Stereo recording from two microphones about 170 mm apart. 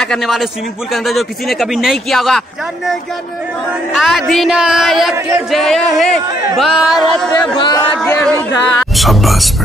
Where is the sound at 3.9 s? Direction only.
Centre (ahead or behind).